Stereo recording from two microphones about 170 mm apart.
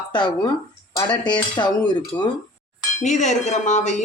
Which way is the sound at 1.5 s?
25° left (ahead or behind).